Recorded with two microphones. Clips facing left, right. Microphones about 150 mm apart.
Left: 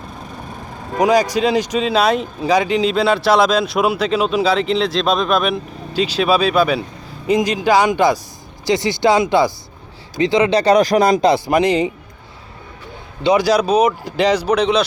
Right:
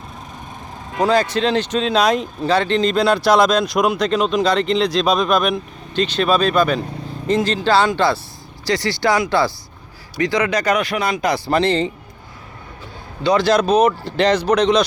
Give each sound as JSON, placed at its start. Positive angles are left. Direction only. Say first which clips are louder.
{"t": 0.9, "sound": "speech", "louder": "left 2 dB", "side_deg": 15}
{"t": 11.3, "sound": "speech", "louder": "left 3 dB", "side_deg": 20}
{"t": 13.2, "sound": "speech", "louder": "left 1 dB", "side_deg": 10}